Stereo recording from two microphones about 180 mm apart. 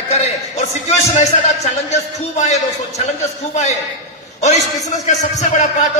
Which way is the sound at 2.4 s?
40° left (ahead or behind).